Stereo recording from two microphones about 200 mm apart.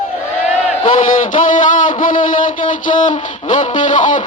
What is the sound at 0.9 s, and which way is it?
Speech, 40° left (ahead or behind).